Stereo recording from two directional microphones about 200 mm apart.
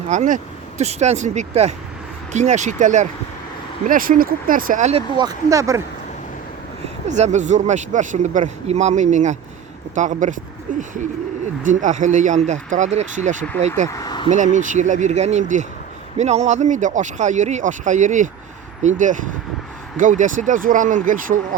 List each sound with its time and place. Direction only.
0.1 s speech: 35° right (ahead or behind); by 5.8 s 15° right (ahead or behind)
6.8 s speech: 35° right (ahead or behind)
11.6 s speech: 40° right (ahead or behind)
13.9 s a sound: 20° left (ahead or behind)
14.3 s speech: 35° right (ahead or behind)